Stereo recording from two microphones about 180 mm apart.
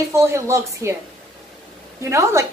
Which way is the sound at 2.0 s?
15° right (ahead or behind).